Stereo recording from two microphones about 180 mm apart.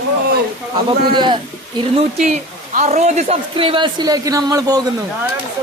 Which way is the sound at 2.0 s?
35° right (ahead or behind).